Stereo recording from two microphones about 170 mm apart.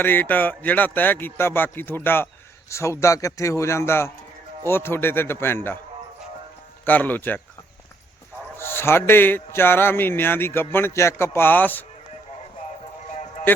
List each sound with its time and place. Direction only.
0.0 s a man's voice: 10° left (ahead or behind)
6.8 s a man's voice: 10° left (ahead or behind)
8.5 s a man's voice: 15° left (ahead or behind)